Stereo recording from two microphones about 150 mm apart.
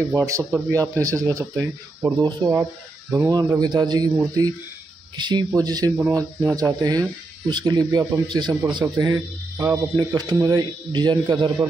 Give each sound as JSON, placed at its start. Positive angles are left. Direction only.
{"t": 0.1, "sound": "speech", "side_deg": -25}